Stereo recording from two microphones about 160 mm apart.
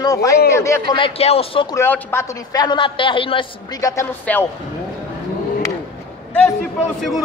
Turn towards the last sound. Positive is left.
turn(degrees=0)  # may be behind; listen again after turning